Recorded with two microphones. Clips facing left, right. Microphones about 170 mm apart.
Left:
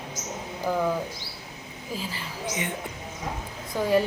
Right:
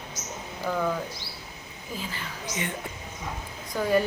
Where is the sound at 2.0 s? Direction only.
30° left (ahead or behind).